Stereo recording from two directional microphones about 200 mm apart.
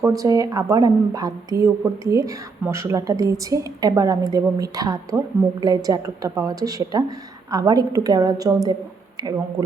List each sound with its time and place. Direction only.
0.0 s a woman's voice: 15° right (ahead or behind)